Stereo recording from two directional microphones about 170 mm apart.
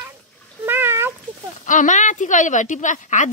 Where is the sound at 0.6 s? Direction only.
10° right (ahead or behind).